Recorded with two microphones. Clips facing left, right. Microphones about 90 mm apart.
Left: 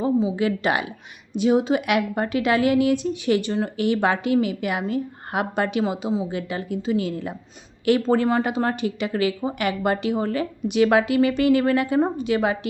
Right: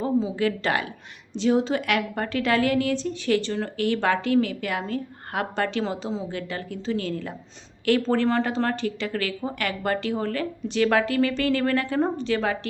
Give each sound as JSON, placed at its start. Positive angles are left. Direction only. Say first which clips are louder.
{"t": 0.0, "sound": "a woman's voice", "louder": "left 2 dB", "side_deg": 15}